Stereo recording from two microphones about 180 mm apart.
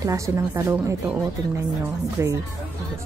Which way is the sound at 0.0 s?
20° right (ahead or behind).